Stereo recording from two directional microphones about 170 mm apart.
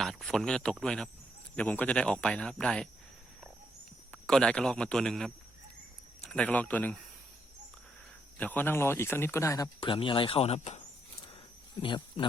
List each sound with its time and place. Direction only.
0.0 s speech: centre (ahead or behind)
4.1 s speech: 5° left (ahead or behind)
8.4 s speech: 10° left (ahead or behind)
9.8 s speech: 30° left (ahead or behind)
11.8 s speech: 30° left (ahead or behind)